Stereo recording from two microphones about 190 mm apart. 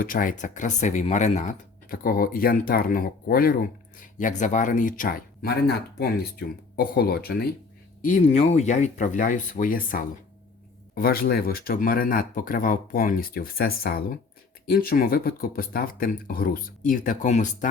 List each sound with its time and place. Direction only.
0.0 s speech: 45° left (ahead or behind)
8.0 s speech: 40° left (ahead or behind)